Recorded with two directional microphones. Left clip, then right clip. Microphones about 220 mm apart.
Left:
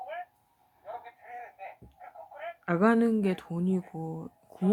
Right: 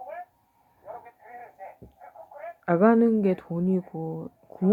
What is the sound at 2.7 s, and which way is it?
Speech, 15° left (ahead or behind).